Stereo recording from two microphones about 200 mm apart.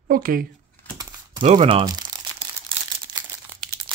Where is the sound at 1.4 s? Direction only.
30° right (ahead or behind).